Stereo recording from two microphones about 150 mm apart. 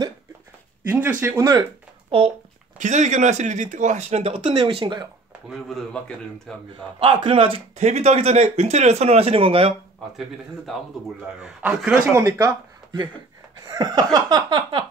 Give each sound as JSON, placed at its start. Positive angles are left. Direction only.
{"t": 0.8, "sound": "speech", "side_deg": -10}
{"t": 1.2, "sound": "laughter", "side_deg": -20}
{"t": 2.0, "sound": "speech", "side_deg": -35}
{"t": 2.8, "sound": "speech", "side_deg": -55}
{"t": 5.5, "sound": "a man's voice", "side_deg": 0}
{"t": 7.0, "sound": "speech", "side_deg": -35}
{"t": 10.1, "sound": "a man's voice", "side_deg": 0}
{"t": 13.7, "sound": "laughter", "side_deg": -25}